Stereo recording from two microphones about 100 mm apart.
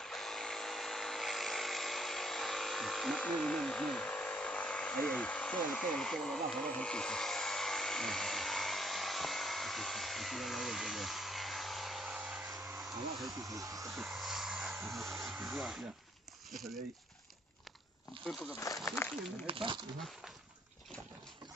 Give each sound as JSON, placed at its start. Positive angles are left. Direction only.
{"t": 0.0, "sound": "electric toothbrush", "side_deg": 5}
{"t": 12.7, "sound": "a sound", "side_deg": 0}
{"t": 13.3, "sound": "speech", "side_deg": -35}
{"t": 13.8, "sound": "a sound", "side_deg": 0}
{"t": 15.4, "sound": "speech", "side_deg": 0}
{"t": 18.2, "sound": "speech", "side_deg": 0}
{"t": 19.4, "sound": "speech", "side_deg": -60}